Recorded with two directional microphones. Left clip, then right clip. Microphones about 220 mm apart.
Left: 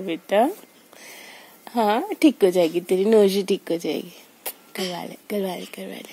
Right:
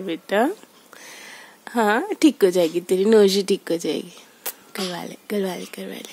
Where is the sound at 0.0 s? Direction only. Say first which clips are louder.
Left 1 dB; 10° right (ahead or behind).